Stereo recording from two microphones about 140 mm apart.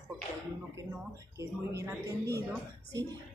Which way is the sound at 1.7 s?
20° right (ahead or behind).